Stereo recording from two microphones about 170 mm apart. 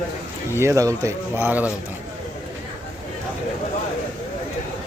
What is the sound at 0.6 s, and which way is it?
Speech, 15° right (ahead or behind).